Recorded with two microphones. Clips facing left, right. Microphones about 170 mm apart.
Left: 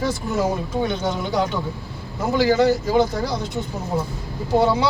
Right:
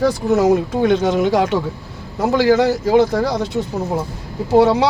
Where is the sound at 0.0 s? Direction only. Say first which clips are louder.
Right 7 dB; 80° right.